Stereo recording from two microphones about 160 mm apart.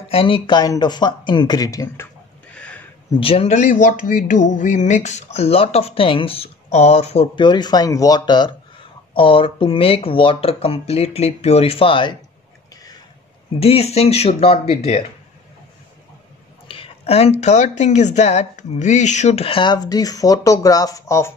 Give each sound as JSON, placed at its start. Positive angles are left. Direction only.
{"t": 0.1, "sound": "speech", "side_deg": 35}
{"t": 2.5, "sound": "a sound", "side_deg": 5}
{"t": 3.2, "sound": "speech", "side_deg": 40}
{"t": 13.6, "sound": "speech", "side_deg": 40}
{"t": 16.6, "sound": "speech", "side_deg": 35}